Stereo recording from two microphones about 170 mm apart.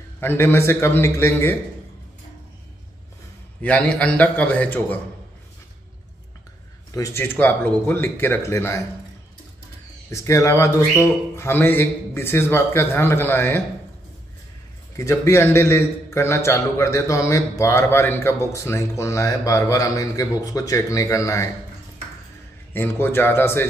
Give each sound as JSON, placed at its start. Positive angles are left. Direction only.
{"t": 0.2, "sound": "a man's voice", "side_deg": 10}
{"t": 3.6, "sound": "a man's voice", "side_deg": 5}
{"t": 6.9, "sound": "a man's voice", "side_deg": 15}
{"t": 10.1, "sound": "a man's voice", "side_deg": 15}
{"t": 15.0, "sound": "a man's voice", "side_deg": 15}
{"t": 22.7, "sound": "a man's voice", "side_deg": 10}